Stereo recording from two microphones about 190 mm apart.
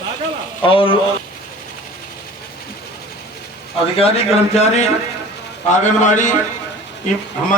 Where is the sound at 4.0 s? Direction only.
30° left (ahead or behind).